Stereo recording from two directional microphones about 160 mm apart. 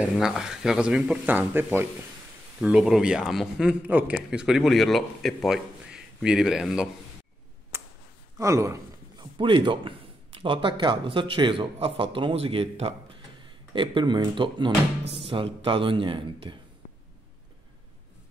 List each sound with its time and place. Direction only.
0.0 s a man's voice: 5° right (ahead or behind)
2.6 s a man's voice: centre (ahead or behind)
7.7 s a sound: 15° right (ahead or behind)
8.4 s a man's voice: 20° right (ahead or behind)
9.4 s a man's voice: 30° right (ahead or behind)